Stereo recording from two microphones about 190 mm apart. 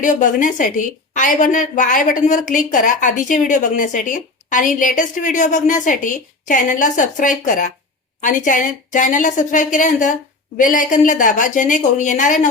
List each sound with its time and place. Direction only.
0.0 s a woman's voice: 45° left (ahead or behind)